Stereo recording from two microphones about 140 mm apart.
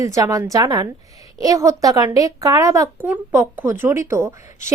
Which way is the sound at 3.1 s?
15° right (ahead or behind).